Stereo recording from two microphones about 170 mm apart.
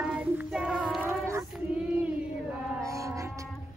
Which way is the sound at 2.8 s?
20° right (ahead or behind).